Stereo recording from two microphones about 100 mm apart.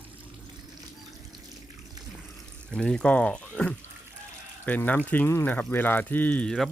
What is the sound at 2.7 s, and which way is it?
Speech, 10° left (ahead or behind).